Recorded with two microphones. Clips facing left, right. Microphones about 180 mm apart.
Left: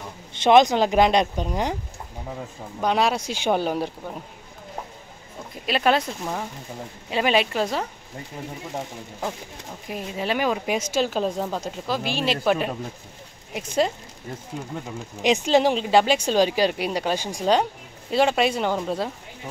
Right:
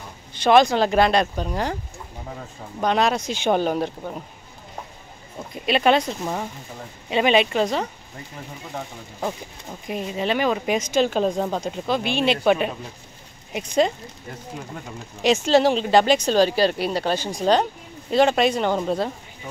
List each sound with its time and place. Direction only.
0.3 s speech: 20° left (ahead or behind)
2.8 s speech: 5° left (ahead or behind)
5.7 s speech: centre (ahead or behind)
9.8 s speech: 5° left (ahead or behind)
15.2 s speech: 15° left (ahead or behind)